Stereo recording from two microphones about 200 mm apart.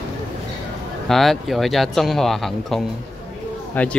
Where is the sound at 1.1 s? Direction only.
Centre (ahead or behind).